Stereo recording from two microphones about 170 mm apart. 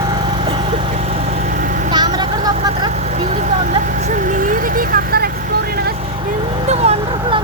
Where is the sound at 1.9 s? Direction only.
25° right (ahead or behind).